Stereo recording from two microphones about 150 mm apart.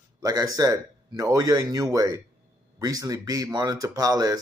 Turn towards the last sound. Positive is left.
turn(degrees=-25)  # may be behind; listen again after turning